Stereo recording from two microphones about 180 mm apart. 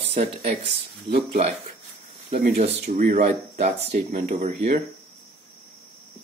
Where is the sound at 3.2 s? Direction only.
40° right (ahead or behind).